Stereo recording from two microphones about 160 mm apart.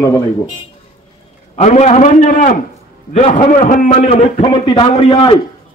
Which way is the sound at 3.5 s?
55° left (ahead or behind).